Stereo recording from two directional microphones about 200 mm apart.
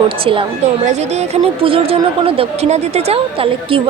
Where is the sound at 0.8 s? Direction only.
35° right (ahead or behind).